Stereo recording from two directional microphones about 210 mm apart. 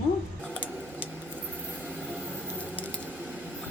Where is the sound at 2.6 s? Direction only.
5° left (ahead or behind).